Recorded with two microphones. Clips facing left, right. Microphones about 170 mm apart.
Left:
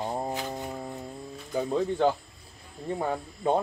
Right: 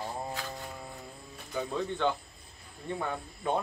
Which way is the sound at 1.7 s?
35° left (ahead or behind).